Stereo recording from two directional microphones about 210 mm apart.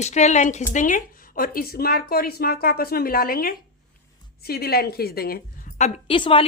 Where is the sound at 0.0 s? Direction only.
35° left (ahead or behind).